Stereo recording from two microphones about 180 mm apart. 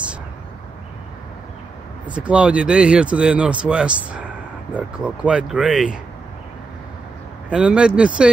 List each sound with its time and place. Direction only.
2.1 s speech: 5° right (ahead or behind)
7.4 s speech: 5° right (ahead or behind)